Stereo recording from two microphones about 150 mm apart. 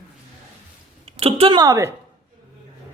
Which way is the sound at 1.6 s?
20° right (ahead or behind).